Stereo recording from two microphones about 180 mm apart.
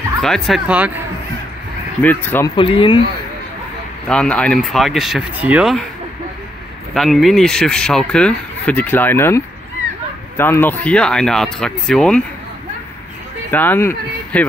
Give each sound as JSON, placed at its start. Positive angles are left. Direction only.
{"t": 0.2, "sound": "speech", "side_deg": 0}
{"t": 2.0, "sound": "speech", "side_deg": 10}
{"t": 2.5, "sound": "speech", "side_deg": 25}
{"t": 4.1, "sound": "speech", "side_deg": 5}
{"t": 6.9, "sound": "speech", "side_deg": 0}
{"t": 13.5, "sound": "speech", "side_deg": 10}